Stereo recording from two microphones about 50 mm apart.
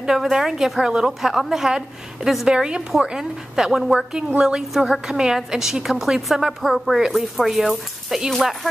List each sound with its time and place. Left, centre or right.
0.0 s a woman's voice: centre